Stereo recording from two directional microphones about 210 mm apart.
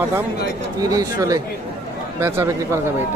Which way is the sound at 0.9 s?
15° right (ahead or behind).